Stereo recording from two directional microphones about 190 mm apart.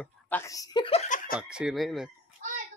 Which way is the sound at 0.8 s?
35° left (ahead or behind).